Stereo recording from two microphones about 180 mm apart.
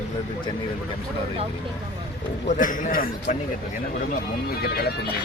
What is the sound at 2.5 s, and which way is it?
Speech, 50° left (ahead or behind).